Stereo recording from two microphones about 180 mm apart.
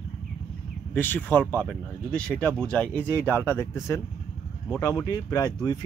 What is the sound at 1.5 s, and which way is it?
Speech, 5° right (ahead or behind).